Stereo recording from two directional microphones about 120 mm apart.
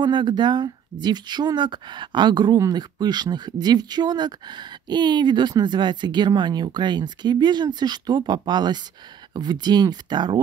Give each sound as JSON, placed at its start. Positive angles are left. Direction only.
{"t": 0.0, "sound": "speech", "side_deg": -40}